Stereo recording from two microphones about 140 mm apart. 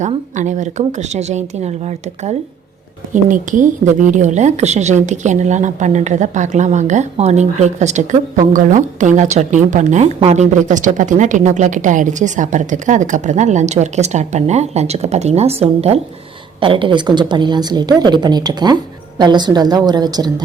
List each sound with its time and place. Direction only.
0.0 s speech: 60° right (ahead or behind)
3.1 s a woman's voice: 70° right (ahead or behind); by 16.0 s 45° right (ahead or behind)
16.6 s a woman's voice: 35° right (ahead or behind)